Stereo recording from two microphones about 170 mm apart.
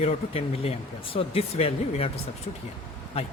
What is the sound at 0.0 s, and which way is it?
Speech, 35° left (ahead or behind).